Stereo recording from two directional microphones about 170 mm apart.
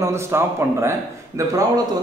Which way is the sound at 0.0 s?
15° right (ahead or behind).